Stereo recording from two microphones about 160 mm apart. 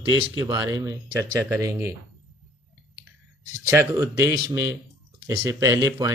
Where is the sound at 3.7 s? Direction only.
15° right (ahead or behind).